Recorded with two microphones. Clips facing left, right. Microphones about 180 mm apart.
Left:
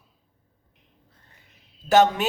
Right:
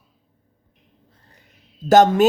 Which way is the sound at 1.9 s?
45° right (ahead or behind).